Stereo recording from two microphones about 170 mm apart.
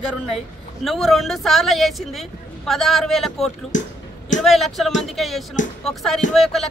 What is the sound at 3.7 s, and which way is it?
Speech, 50° left (ahead or behind).